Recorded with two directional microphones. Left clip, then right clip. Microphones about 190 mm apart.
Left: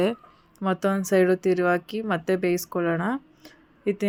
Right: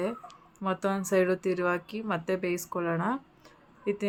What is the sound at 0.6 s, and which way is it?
Speech, 25° left (ahead or behind).